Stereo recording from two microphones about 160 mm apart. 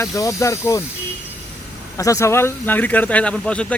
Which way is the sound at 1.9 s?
20° left (ahead or behind).